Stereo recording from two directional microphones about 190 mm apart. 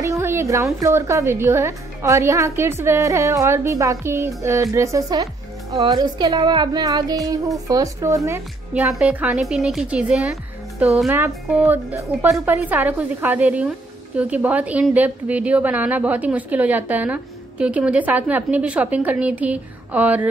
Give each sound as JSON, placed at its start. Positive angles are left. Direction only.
{"t": 0.0, "sound": "a woman's voice", "side_deg": -15}